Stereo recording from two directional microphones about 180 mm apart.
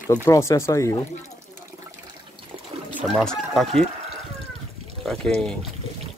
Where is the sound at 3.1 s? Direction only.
5° left (ahead or behind).